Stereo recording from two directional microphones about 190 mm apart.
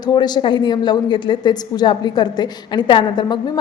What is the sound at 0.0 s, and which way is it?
A woman's voice, 20° left (ahead or behind).